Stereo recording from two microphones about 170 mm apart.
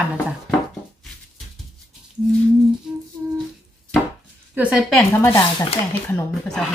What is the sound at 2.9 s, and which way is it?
Humming, 5° right (ahead or behind).